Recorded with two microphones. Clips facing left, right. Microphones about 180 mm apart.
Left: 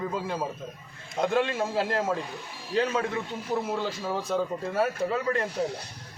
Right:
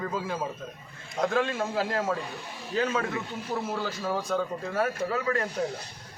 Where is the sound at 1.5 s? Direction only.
20° left (ahead or behind).